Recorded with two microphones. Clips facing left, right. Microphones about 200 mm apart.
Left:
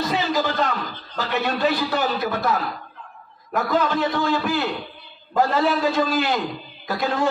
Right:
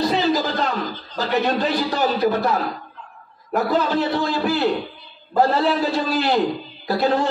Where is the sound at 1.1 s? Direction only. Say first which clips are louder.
Right 4 dB; 35° right (ahead or behind).